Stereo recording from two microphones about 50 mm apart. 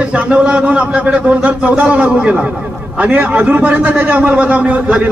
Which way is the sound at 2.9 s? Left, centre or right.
Right.